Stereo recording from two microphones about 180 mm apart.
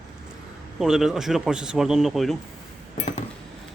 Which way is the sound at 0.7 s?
Centre (ahead or behind).